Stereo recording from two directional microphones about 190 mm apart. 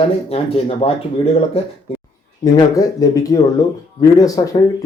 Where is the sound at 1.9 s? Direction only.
30° left (ahead or behind).